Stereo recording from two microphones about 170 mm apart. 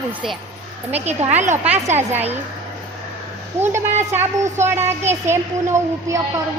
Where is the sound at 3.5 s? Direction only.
15° right (ahead or behind).